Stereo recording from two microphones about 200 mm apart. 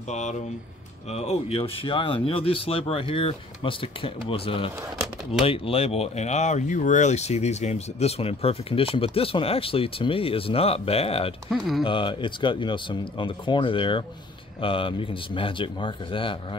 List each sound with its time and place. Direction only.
0.1 s speech: 35° left (ahead or behind)
11.5 s speech: centre (ahead or behind)
11.8 s speech: 25° left (ahead or behind)